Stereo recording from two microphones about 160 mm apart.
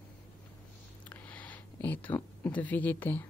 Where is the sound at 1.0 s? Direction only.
10° left (ahead or behind).